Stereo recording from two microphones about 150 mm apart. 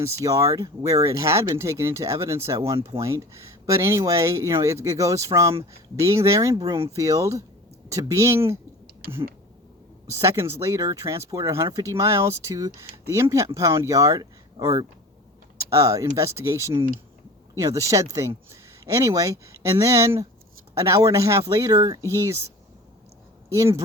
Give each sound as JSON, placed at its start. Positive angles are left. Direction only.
{"t": 0.0, "sound": "speech", "side_deg": -20}
{"t": 10.1, "sound": "speech", "side_deg": -20}
{"t": 23.6, "sound": "speech", "side_deg": -20}